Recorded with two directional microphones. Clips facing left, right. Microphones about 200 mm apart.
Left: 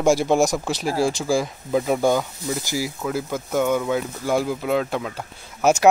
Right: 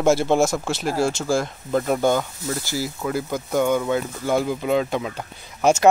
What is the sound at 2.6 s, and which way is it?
Speech, 15° left (ahead or behind).